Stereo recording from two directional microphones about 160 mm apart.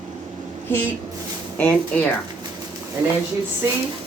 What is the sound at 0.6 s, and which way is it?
Speech, 10° left (ahead or behind).